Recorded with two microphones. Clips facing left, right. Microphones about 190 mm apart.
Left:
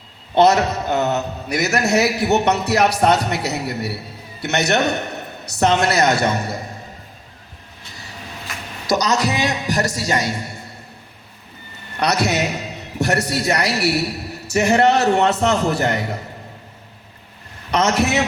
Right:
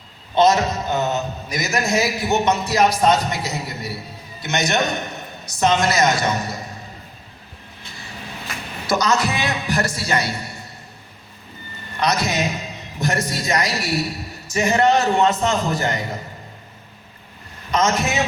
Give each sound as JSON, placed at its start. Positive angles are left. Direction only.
{"t": 0.3, "sound": "a man's voice", "side_deg": 65}
{"t": 8.9, "sound": "a man's voice", "side_deg": 40}
{"t": 11.9, "sound": "a man's voice", "side_deg": 65}
{"t": 17.7, "sound": "a man's voice", "side_deg": 70}